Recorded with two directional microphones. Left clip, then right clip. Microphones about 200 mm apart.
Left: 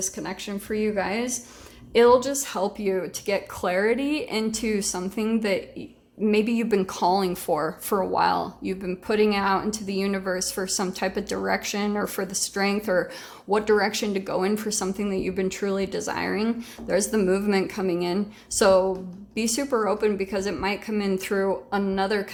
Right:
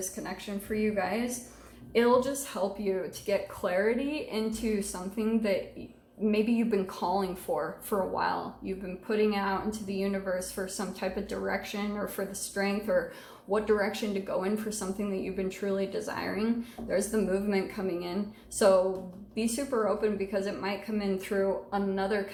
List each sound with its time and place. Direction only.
0.2 s speech: 50° left (ahead or behind)
19.4 s speech: 55° left (ahead or behind)